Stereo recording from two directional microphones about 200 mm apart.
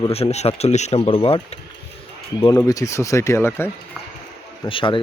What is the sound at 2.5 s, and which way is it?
Speech, 15° left (ahead or behind).